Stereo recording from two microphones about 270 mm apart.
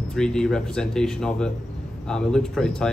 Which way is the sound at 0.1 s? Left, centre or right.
Centre.